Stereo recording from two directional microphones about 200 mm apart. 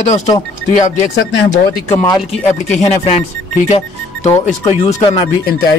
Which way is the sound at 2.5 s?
35° left (ahead or behind).